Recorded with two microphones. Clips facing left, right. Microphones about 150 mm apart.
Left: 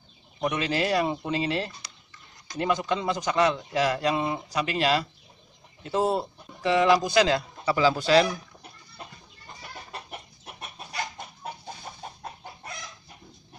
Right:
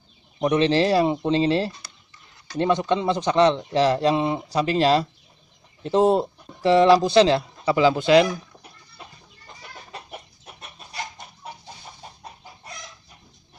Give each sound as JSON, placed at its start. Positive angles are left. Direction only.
{"t": 0.4, "sound": "a man's voice", "side_deg": -30}